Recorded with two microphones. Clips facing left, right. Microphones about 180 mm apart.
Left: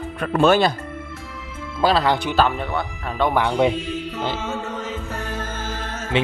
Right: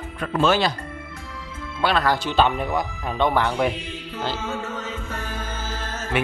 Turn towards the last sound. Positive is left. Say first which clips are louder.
# left 3 dB
turn(degrees=25)  # may be behind; listen again after turning